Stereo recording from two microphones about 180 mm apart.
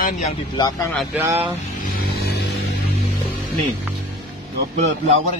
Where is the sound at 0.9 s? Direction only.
5° right (ahead or behind).